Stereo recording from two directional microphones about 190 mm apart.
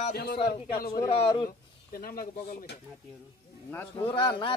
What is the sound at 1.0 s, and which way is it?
Speech, 25° left (ahead or behind).